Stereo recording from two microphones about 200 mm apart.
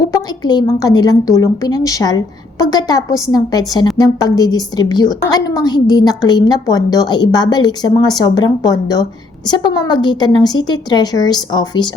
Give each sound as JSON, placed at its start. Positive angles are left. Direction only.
{"t": 0.1, "sound": "a woman's voice", "side_deg": 20}